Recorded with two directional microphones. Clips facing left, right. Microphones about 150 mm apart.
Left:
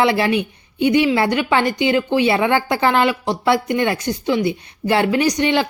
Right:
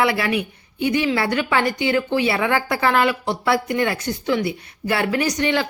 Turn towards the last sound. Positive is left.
turn(degrees=20)  # may be behind; listen again after turning